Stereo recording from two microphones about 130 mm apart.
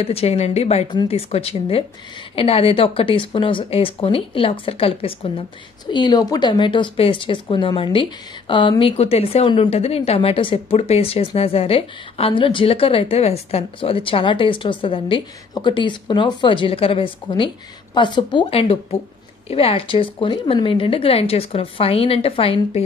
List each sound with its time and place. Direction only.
0.0 s speech: 50° left (ahead or behind)
5.9 s a woman's voice: 35° left (ahead or behind)